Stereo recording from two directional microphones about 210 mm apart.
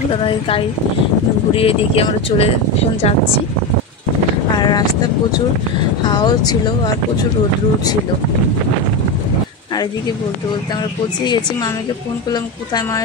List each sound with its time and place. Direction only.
0.1 s speech: 25° left (ahead or behind)
4.6 s vehicle: 20° left (ahead or behind)
6.0 s speech: 20° left (ahead or behind)
12.3 s a woman's voice: 20° left (ahead or behind)